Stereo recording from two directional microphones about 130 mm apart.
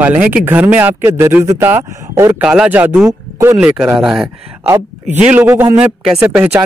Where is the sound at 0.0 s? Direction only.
10° right (ahead or behind).